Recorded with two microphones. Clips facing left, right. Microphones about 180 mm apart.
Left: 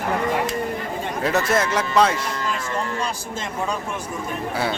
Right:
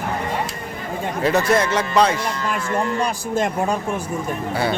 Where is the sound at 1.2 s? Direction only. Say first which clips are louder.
Right 3 dB; centre (ahead or behind).